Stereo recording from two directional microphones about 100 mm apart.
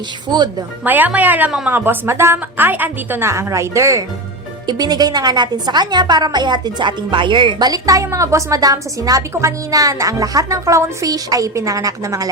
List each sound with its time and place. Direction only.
0.3 s a woman's voice: 50° right (ahead or behind)
0.9 s a woman's voice: 15° right (ahead or behind)
4.6 s a woman's voice: 45° right (ahead or behind)
7.7 s a woman's voice: 35° right (ahead or behind)